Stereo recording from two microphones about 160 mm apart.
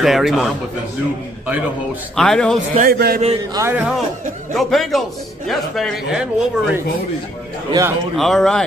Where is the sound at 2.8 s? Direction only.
75° right (ahead or behind).